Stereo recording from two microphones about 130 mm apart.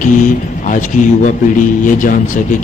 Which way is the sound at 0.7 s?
75° left (ahead or behind).